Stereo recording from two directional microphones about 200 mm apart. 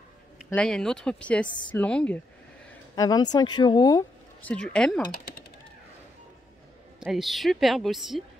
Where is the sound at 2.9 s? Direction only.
20° left (ahead or behind).